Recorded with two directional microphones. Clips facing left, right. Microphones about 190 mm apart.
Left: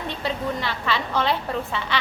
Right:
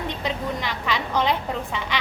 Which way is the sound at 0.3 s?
15° right (ahead or behind).